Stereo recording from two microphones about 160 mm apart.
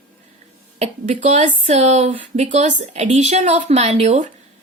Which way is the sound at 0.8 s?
40° right (ahead or behind).